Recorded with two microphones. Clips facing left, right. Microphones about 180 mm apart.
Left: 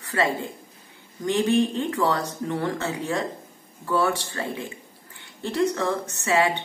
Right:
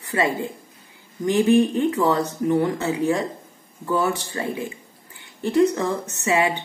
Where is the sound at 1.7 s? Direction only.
20° right (ahead or behind).